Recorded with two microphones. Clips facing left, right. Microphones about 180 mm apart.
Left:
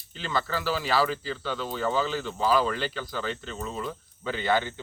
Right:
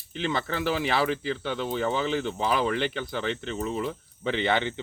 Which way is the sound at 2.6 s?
20° right (ahead or behind).